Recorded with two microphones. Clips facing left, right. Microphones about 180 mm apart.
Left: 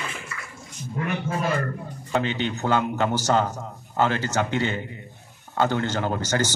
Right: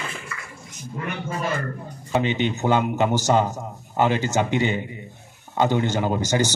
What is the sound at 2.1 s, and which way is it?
A man's voice, 20° right (ahead or behind).